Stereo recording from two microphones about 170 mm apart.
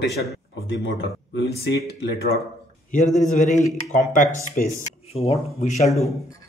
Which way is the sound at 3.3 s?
45° left (ahead or behind).